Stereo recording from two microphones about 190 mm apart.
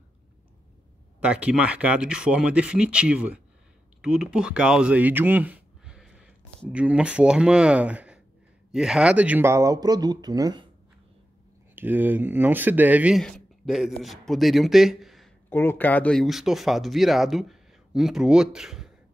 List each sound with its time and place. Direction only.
1.2 s speech: 5° right (ahead or behind); by 10.7 s 20° right (ahead or behind)
11.7 s speech: 10° right (ahead or behind)
15.5 s speech: 10° left (ahead or behind)